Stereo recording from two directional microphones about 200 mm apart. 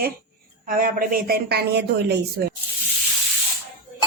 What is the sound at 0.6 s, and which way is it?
A woman's voice, 45° right (ahead or behind).